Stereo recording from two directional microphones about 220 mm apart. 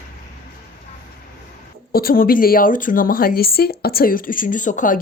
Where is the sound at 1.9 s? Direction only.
40° left (ahead or behind).